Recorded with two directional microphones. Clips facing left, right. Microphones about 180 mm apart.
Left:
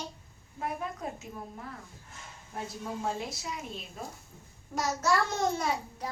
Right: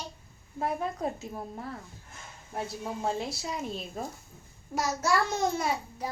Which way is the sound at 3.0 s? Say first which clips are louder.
Right 5 dB; 30° right (ahead or behind).